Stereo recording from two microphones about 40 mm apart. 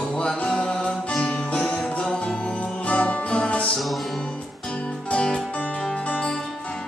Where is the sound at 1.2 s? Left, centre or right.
Left.